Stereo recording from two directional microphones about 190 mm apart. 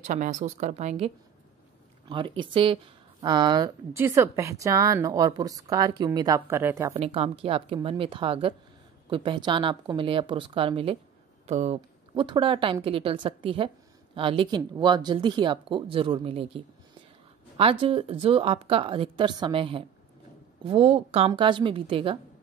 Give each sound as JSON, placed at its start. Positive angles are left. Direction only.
{"t": 0.0, "sound": "a woman's voice", "side_deg": -40}
{"t": 6.9, "sound": "a woman's voice", "side_deg": -30}